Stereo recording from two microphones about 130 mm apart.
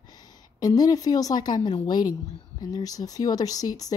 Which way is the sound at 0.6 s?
30° left (ahead or behind).